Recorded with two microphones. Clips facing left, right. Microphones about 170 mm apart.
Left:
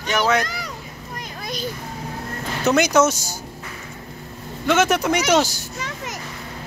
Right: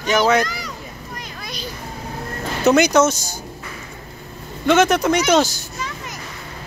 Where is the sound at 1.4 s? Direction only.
45° left (ahead or behind).